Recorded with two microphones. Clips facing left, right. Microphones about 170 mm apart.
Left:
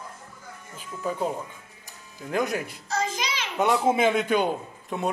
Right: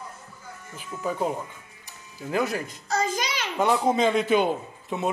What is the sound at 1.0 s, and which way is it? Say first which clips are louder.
Speech: right 1 dB; 5° right (ahead or behind).